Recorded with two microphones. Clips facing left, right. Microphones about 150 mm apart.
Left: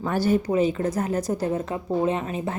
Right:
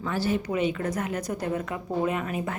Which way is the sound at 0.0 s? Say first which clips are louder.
Left 5 dB; 45° left (ahead or behind).